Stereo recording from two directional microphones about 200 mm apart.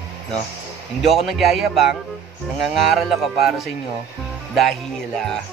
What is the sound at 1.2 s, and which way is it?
Speech, centre (ahead or behind).